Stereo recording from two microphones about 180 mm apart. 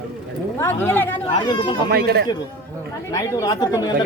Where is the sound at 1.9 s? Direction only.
60° right (ahead or behind).